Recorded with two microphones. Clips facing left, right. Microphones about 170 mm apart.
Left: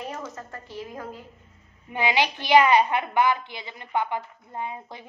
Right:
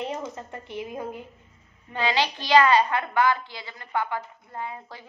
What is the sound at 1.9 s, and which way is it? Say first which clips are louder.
A woman's voice: left 1 dB; 15° left (ahead or behind).